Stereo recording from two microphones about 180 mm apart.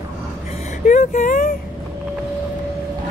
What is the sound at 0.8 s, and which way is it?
Speech, 45° left (ahead or behind).